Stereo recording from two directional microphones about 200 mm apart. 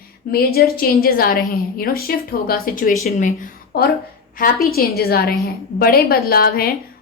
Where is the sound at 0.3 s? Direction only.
50° left (ahead or behind).